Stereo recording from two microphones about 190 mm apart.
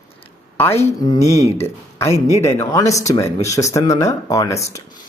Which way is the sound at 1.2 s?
35° left (ahead or behind).